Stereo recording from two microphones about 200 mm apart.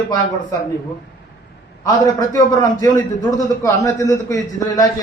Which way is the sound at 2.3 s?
20° left (ahead or behind).